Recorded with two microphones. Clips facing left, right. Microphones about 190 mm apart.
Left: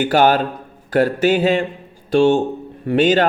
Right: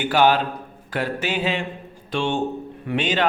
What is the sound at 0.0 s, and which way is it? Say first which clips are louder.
A man's voice: left 4 dB; 45° left (ahead or behind).